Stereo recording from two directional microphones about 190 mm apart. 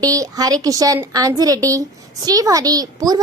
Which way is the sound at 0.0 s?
20° right (ahead or behind).